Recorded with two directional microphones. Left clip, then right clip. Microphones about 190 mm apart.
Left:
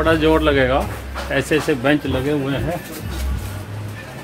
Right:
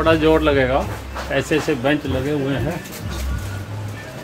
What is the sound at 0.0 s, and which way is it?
Speech, centre (ahead or behind).